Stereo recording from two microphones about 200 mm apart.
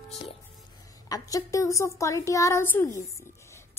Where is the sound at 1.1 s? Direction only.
15° left (ahead or behind).